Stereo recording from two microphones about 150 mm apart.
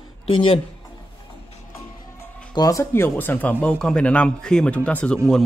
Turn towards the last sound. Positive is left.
turn(degrees=5)  # may be behind; listen again after turning